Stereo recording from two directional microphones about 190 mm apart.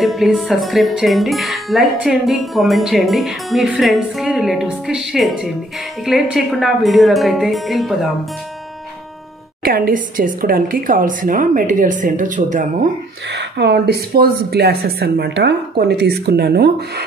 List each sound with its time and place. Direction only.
0.0 s speech: centre (ahead or behind)
9.6 s speech: 50° right (ahead or behind)
13.4 s speech: 65° right (ahead or behind)